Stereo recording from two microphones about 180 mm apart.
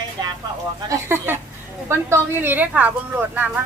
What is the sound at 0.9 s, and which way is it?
Speech, 15° right (ahead or behind).